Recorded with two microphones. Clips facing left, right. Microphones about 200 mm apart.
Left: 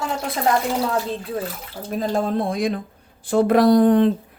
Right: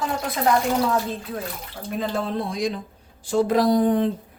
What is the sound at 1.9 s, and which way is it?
Speech, 40° left (ahead or behind).